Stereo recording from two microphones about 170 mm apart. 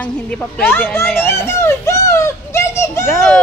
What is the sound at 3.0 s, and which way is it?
Speech, centre (ahead or behind).